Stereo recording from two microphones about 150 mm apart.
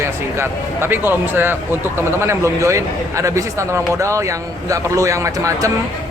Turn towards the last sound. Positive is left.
turn(degrees=-20)  # may be behind; listen again after turning